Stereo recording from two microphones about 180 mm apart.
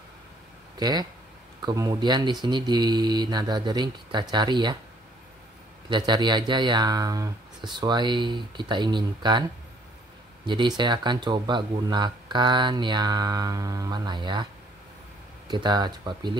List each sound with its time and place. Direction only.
0.7 s speech: 20° right (ahead or behind)
5.9 s speech: 25° right (ahead or behind)
10.4 s speech: 25° right (ahead or behind)